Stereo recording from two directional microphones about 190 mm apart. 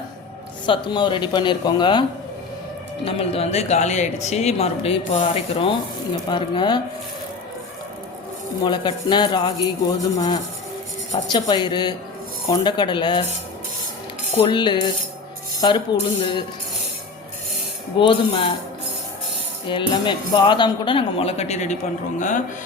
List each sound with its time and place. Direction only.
0.6 s speech: 25° left (ahead or behind)
8.6 s speech: 25° left (ahead or behind)
14.3 s speech: 25° left (ahead or behind)
18.0 s speech: 30° left (ahead or behind)
19.6 s speech: 25° left (ahead or behind); by 22.4 s 40° left (ahead or behind)